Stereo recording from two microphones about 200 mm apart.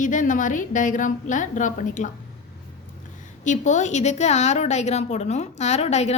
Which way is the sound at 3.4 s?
35° left (ahead or behind).